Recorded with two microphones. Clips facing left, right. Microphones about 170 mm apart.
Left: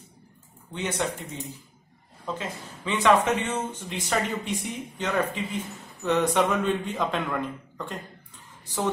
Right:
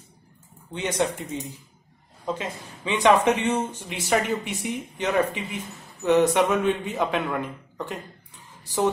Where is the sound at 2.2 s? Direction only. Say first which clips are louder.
Right 3 dB; 15° right (ahead or behind).